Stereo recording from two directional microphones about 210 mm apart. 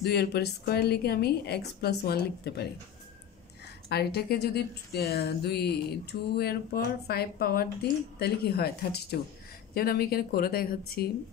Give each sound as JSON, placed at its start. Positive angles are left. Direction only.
{"t": 0.0, "sound": "a woman's voice", "side_deg": 50}
{"t": 3.9, "sound": "a woman's voice", "side_deg": 50}